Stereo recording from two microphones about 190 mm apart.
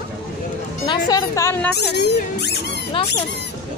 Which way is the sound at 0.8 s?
20° left (ahead or behind).